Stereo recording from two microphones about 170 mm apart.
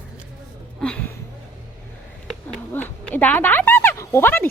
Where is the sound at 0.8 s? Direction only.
10° left (ahead or behind).